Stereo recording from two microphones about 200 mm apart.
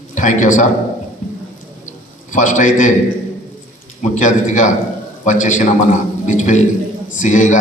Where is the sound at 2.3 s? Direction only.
40° left (ahead or behind).